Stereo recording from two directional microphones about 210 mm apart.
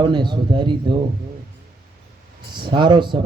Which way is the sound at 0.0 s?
20° right (ahead or behind).